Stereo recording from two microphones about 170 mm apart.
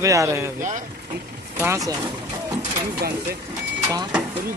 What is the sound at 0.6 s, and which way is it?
Speech, 50° right (ahead or behind).